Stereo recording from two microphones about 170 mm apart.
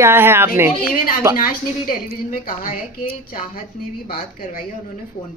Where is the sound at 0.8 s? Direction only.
60° left (ahead or behind).